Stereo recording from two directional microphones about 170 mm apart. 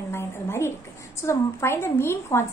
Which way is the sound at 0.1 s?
15° left (ahead or behind).